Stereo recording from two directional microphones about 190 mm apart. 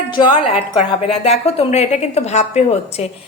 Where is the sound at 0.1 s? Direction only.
25° left (ahead or behind).